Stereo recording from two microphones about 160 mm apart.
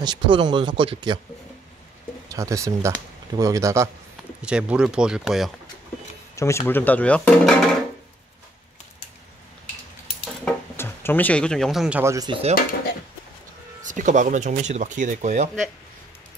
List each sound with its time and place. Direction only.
0.0 s speech: 30° right (ahead or behind)
2.2 s speech: 20° right (ahead or behind)
4.4 s speech: 5° right (ahead or behind)
6.3 s speech: 15° left (ahead or behind)
10.4 s a sound: 15° left (ahead or behind); by 12.0 s 5° right (ahead or behind)
12.0 s speech: 20° right (ahead or behind)
12.3 s speech: 40° right (ahead or behind)
13.8 s speech: 50° right (ahead or behind)